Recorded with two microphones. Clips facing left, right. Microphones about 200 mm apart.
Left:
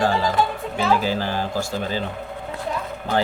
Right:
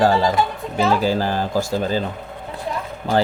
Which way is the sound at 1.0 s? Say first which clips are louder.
Right 4 dB; 40° right (ahead or behind).